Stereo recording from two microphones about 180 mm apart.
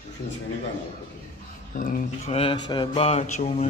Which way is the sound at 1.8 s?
50° left (ahead or behind).